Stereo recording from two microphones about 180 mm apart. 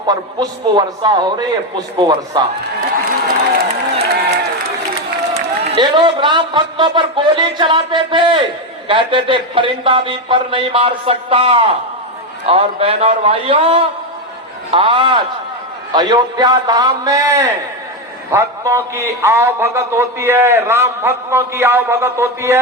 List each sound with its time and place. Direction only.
0.1 s a man's voice: 20° right (ahead or behind)
3.0 s crowd: 55° right (ahead or behind)
5.3 s a man's voice: 25° right (ahead or behind)